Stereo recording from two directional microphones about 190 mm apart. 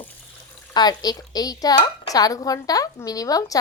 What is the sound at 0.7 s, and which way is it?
Speech, 20° left (ahead or behind).